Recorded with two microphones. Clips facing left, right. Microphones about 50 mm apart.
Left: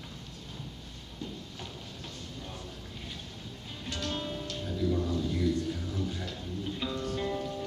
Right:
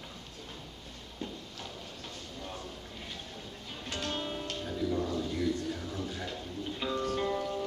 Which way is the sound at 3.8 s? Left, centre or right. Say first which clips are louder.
Even; right.